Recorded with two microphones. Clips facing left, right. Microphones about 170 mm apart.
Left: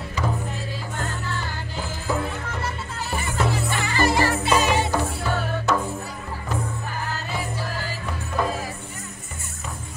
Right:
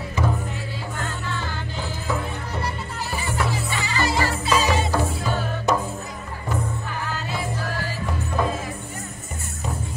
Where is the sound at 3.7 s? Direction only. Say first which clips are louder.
Left 2 dB; 50° left (ahead or behind).